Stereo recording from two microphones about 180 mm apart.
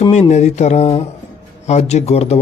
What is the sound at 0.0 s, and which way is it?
Speech, 40° left (ahead or behind).